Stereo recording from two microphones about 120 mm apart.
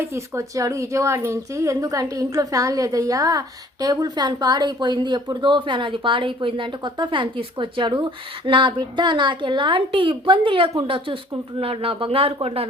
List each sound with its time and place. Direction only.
0.0 s a woman's voice: 25° right (ahead or behind); by 12.6 s 55° right (ahead or behind)